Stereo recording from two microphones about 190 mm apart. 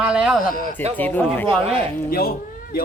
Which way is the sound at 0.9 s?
10° left (ahead or behind).